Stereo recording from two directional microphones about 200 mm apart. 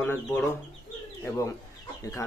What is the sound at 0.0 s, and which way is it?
Speech, 10° left (ahead or behind).